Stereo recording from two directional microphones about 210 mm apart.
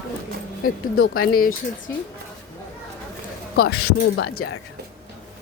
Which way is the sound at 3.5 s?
45° left (ahead or behind).